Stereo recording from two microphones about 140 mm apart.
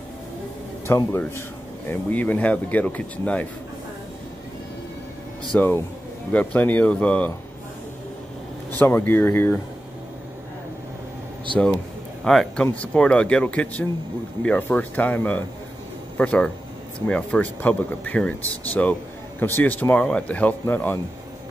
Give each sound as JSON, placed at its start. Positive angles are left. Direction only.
{"t": 0.8, "sound": "speech", "side_deg": 20}
{"t": 5.5, "sound": "speech", "side_deg": 15}
{"t": 8.7, "sound": "speech", "side_deg": 15}
{"t": 12.3, "sound": "speech", "side_deg": 0}